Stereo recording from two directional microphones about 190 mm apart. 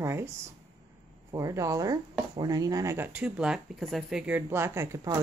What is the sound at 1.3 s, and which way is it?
Speech, 15° right (ahead or behind).